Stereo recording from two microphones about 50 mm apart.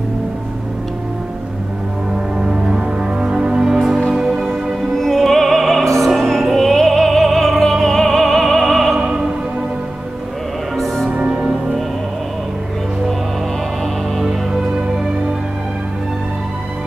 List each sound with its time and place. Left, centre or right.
2.3 s music: centre
4.9 s music: centre
6.5 s opera: centre
8.9 s music: centre
11.1 s music: centre